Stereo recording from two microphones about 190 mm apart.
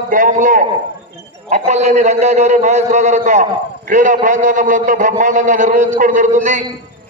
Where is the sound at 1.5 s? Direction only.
35° right (ahead or behind).